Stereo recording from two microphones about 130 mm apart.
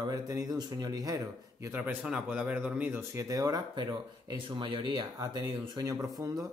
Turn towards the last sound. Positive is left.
turn(degrees=-30)  # may be behind; listen again after turning